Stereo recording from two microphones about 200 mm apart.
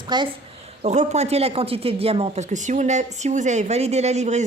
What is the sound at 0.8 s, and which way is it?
Speech, 35° right (ahead or behind).